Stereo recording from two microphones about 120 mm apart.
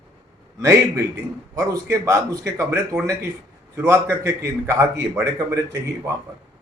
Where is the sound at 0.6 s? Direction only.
25° right (ahead or behind).